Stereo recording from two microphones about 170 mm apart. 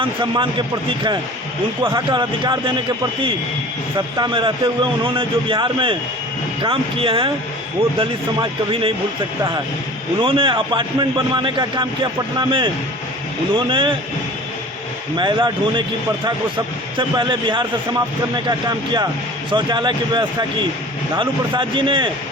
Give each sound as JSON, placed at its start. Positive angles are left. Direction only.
{"t": 0.0, "sound": "speech", "side_deg": -30}
{"t": 1.9, "sound": "speech", "side_deg": -25}
{"t": 3.9, "sound": "speech", "side_deg": -25}
{"t": 10.2, "sound": "speech", "side_deg": -30}
{"t": 15.2, "sound": "speech", "side_deg": -25}
{"t": 17.0, "sound": "speech", "side_deg": -30}